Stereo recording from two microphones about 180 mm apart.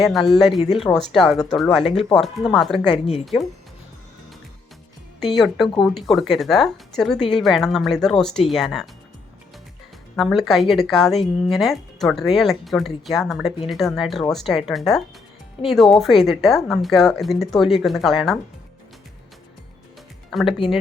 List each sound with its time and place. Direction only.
0.0 s speech: centre (ahead or behind)
1.8 s speech: 30° left (ahead or behind)
2.5 s speech: centre (ahead or behind)
5.2 s speech: centre (ahead or behind)
10.2 s speech: centre (ahead or behind)
20.3 s speech: centre (ahead or behind)